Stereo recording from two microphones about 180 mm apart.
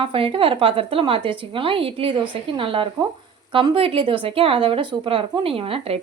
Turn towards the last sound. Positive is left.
turn(degrees=-30)  # may be behind; listen again after turning